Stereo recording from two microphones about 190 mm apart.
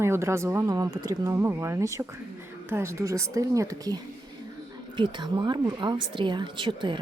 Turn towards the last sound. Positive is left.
turn(degrees=-25)  # may be behind; listen again after turning